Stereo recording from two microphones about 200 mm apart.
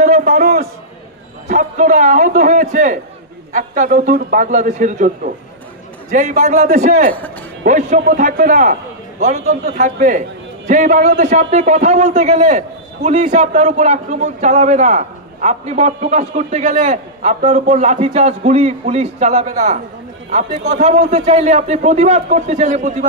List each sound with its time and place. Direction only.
0.0 s a sound: 35° right (ahead or behind)
1.5 s a man's voice: 40° right (ahead or behind)
6.5 s a man's voice: 45° right (ahead or behind)
9.8 s a man's voice: 40° right (ahead or behind)